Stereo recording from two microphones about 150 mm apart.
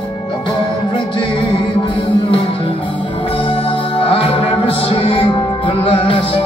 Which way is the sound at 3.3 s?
35° left (ahead or behind).